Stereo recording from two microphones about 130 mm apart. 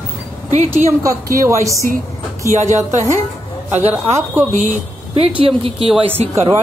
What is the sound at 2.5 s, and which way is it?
Speech, 65° right (ahead or behind).